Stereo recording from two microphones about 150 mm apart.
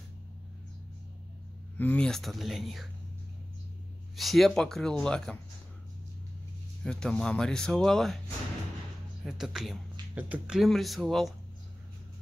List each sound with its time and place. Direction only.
1.8 s speech: 10° left (ahead or behind)
4.2 s speech: centre (ahead or behind)
6.8 s speech: 5° left (ahead or behind)
9.2 s speech: 5° right (ahead or behind)